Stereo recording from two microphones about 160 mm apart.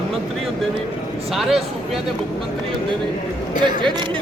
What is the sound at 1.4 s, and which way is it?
Speech, centre (ahead or behind).